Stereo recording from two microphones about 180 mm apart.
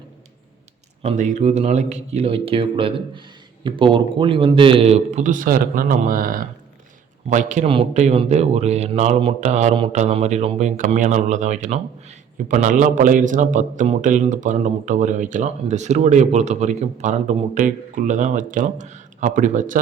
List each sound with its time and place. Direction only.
1.0 s a man's voice: 40° right (ahead or behind)